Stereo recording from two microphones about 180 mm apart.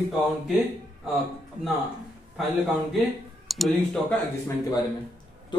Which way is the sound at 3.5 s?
Centre (ahead or behind).